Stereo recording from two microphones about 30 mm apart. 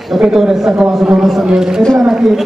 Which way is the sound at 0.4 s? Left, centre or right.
Centre.